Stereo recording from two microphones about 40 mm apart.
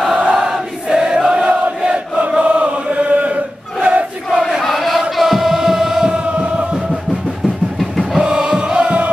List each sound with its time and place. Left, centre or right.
0.2 s crowd: right
0.5 s choir: centre
2.1 s chant: right
4.4 s chant: centre
5.1 s music: centre
6.1 s chant: right
8.2 s music: centre